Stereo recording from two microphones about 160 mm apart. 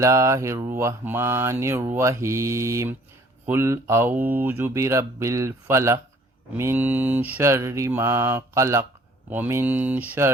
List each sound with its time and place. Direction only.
0.0 s mantra: 20° right (ahead or behind)